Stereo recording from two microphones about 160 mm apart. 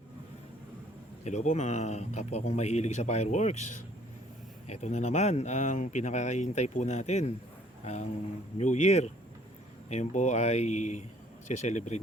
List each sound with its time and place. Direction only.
1.2 s speech: 45° left (ahead or behind)
8.5 s speech: 45° left (ahead or behind)